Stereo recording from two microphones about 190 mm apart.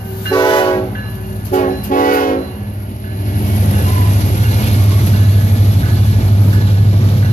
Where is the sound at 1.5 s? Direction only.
45° left (ahead or behind).